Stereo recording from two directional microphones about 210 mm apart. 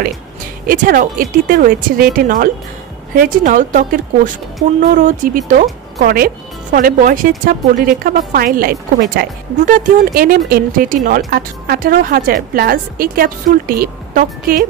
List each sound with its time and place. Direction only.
0.7 s speech: 40° right (ahead or behind)